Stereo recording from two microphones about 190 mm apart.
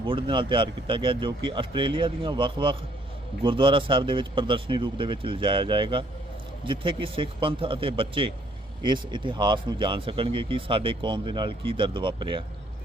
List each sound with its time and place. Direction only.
0.0 s speech: 25° right (ahead or behind)